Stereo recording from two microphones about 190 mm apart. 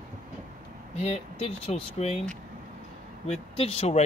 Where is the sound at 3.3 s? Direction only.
30° left (ahead or behind).